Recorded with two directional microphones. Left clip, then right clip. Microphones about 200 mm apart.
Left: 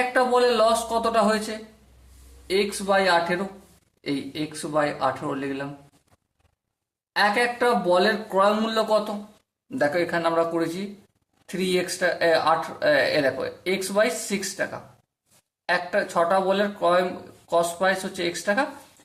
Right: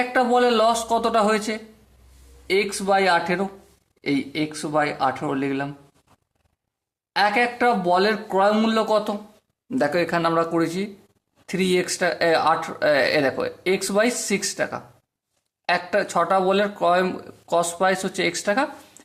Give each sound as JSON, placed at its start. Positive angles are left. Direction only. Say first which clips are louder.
{"t": 0.1, "sound": "speech", "louder": "right 3 dB", "side_deg": -40}
{"t": 7.2, "sound": "speech", "louder": "right 2 dB", "side_deg": -35}